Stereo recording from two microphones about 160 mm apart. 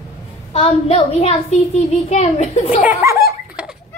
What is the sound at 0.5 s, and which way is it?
A woman's voice, 40° left (ahead or behind).